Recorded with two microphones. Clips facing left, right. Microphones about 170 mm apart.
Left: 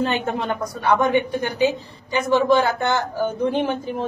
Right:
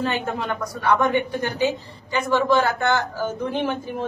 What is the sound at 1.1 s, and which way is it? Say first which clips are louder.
A woman's voice: left 2 dB; 15° left (ahead or behind).